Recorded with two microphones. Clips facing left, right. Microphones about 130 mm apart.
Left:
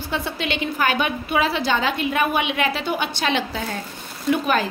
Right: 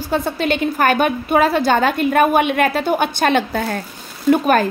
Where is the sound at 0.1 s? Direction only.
45° right (ahead or behind).